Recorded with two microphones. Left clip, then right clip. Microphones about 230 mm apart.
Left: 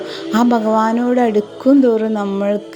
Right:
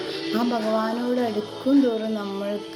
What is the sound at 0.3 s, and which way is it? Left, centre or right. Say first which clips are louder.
Speech: left 10 dB; left.